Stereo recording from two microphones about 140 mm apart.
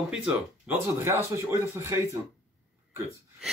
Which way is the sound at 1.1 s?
20° right (ahead or behind).